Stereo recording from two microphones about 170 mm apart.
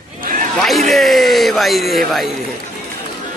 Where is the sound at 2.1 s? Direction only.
Centre (ahead or behind).